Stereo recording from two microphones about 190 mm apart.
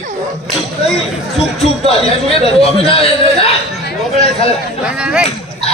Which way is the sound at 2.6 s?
30° left (ahead or behind).